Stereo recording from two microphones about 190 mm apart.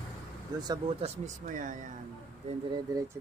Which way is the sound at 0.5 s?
20° right (ahead or behind).